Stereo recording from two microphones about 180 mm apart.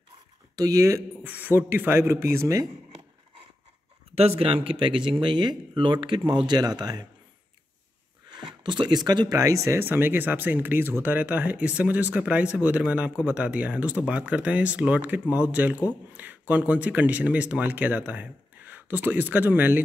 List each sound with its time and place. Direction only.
0.6 s speech: 20° right (ahead or behind)
4.2 s speech: 35° right (ahead or behind)
8.3 s speech: 25° right (ahead or behind); by 19.8 s 10° right (ahead or behind)